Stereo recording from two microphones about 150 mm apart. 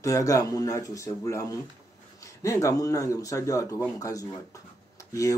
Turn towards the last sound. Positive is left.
turn(degrees=20)  # may be behind; listen again after turning